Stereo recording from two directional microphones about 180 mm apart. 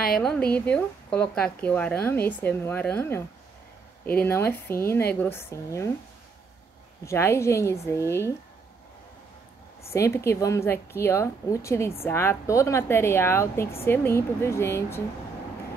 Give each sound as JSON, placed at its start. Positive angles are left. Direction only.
{"t": 0.2, "sound": "a woman's voice", "side_deg": 5}
{"t": 7.1, "sound": "a woman's voice", "side_deg": 15}
{"t": 9.9, "sound": "a woman's voice", "side_deg": 15}